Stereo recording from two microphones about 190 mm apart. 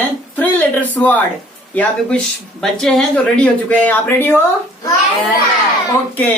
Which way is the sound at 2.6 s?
Centre (ahead or behind).